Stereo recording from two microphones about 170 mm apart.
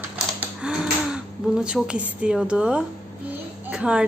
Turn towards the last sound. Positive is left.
turn(degrees=-5)  # may be behind; listen again after turning